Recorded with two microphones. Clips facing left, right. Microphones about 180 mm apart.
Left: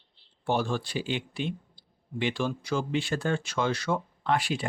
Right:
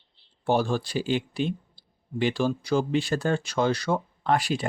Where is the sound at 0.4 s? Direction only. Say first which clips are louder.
Right 4 dB; 40° right (ahead or behind).